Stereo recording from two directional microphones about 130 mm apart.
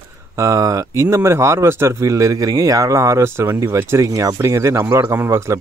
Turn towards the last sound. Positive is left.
turn(degrees=-20)  # may be behind; listen again after turning